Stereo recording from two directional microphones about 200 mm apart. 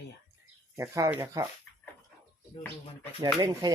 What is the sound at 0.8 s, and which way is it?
Speech, 15° right (ahead or behind).